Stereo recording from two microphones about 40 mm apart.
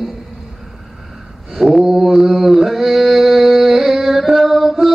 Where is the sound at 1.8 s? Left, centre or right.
Centre.